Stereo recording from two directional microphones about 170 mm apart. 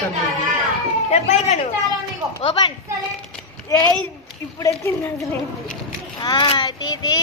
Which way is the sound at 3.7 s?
5° left (ahead or behind).